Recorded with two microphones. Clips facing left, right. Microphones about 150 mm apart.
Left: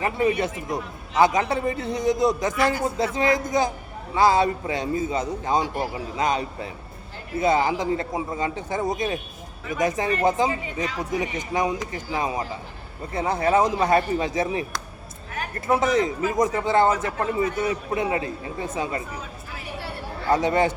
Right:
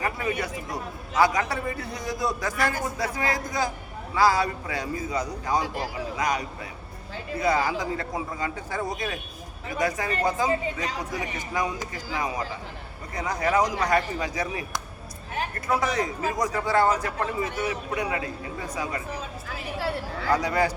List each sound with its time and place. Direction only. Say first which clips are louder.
0.0 s a man's voice: left 6 dB; 25° left (ahead or behind)
15.6 s a man's voice: left 6 dB; 25° left (ahead or behind)
20.3 s a man's voice: left 4 dB; 25° left (ahead or behind)